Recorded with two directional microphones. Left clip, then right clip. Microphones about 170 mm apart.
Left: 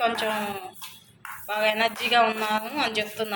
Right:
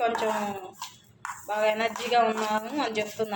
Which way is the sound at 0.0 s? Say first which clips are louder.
Left 1 dB; 25° right (ahead or behind).